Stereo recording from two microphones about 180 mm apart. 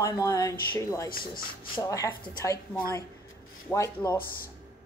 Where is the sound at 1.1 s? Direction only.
55° left (ahead or behind).